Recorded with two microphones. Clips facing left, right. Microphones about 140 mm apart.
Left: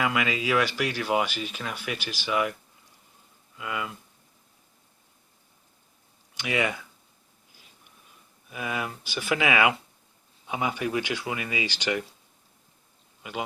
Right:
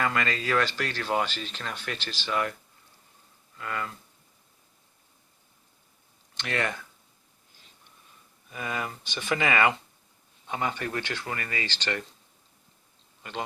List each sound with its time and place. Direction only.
0.0 s speech: 10° left (ahead or behind)
3.6 s speech: 10° left (ahead or behind)
6.3 s speech: 10° left (ahead or behind)
8.4 s speech: 5° left (ahead or behind)
13.2 s speech: 10° left (ahead or behind)